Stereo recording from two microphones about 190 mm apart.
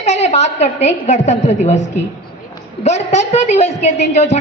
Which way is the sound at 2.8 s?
35° left (ahead or behind).